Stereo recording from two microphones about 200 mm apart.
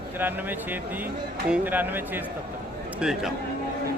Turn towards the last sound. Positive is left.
turn(degrees=-5)  # may be behind; listen again after turning